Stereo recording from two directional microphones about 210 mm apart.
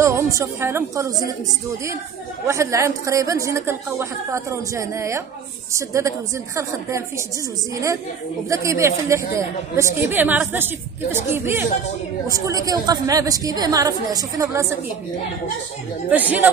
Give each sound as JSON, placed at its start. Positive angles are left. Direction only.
{"t": 0.0, "sound": "a woman's voice", "side_deg": -15}
{"t": 2.4, "sound": "a woman's voice", "side_deg": -15}
{"t": 8.5, "sound": "a woman's voice", "side_deg": -15}
{"t": 16.1, "sound": "a woman's voice", "side_deg": -10}